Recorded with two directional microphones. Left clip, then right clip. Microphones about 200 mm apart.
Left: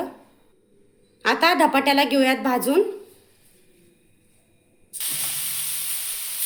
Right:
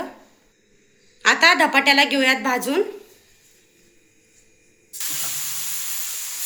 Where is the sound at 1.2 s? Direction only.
30° left (ahead or behind).